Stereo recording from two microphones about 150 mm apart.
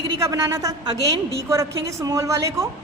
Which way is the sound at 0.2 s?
20° right (ahead or behind).